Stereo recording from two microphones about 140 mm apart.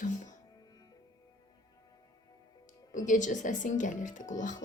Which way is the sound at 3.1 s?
60° left (ahead or behind).